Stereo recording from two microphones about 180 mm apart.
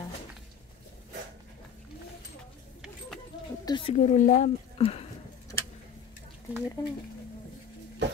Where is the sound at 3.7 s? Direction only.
25° left (ahead or behind).